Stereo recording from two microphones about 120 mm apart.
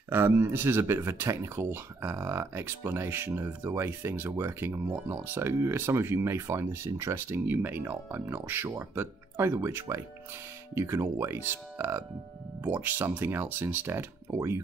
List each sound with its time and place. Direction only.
0.1 s speech: 20° right (ahead or behind)